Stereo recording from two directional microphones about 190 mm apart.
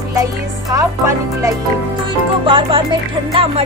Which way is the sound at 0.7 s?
15° right (ahead or behind).